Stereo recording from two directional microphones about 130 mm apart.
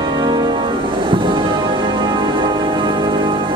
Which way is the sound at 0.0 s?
35° right (ahead or behind).